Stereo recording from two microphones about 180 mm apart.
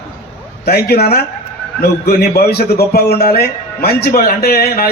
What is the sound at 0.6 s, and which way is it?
A man's voice, 60° left (ahead or behind).